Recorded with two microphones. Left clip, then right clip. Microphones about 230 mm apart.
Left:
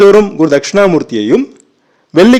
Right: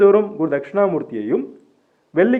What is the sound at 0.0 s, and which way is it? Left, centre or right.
A man's voice, left.